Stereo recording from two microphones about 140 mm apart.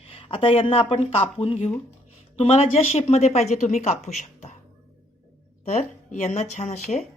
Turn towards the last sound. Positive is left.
turn(degrees=55)  # may be behind; listen again after turning